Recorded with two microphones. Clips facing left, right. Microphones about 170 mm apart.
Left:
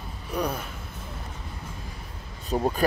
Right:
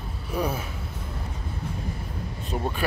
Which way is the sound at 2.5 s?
30° left (ahead or behind).